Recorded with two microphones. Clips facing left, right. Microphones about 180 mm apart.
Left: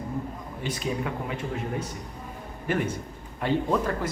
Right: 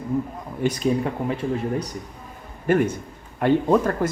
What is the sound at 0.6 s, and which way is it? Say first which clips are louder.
Speech: right 8 dB; 40° right (ahead or behind).